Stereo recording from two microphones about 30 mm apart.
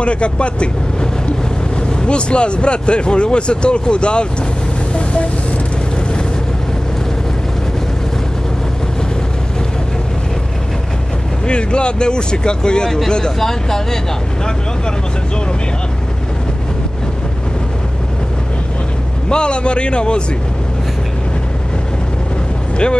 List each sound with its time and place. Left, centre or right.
0.0 s speech: left
1.8 s speech: left
11.4 s speech: left; by 13.8 s centre
19.2 s speech: left